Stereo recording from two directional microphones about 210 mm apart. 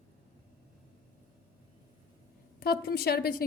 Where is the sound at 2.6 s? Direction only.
45° left (ahead or behind).